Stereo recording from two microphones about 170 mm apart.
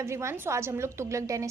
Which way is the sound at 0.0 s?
15° right (ahead or behind).